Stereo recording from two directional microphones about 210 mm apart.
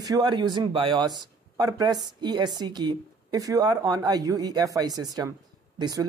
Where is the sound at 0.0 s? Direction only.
20° right (ahead or behind).